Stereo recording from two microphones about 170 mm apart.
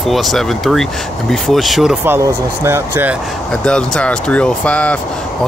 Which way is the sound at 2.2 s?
15° right (ahead or behind).